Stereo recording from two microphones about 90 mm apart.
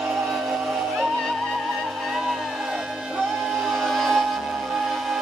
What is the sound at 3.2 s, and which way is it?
Music, centre (ahead or behind).